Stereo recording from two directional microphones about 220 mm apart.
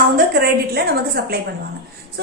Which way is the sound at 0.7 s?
45° right (ahead or behind).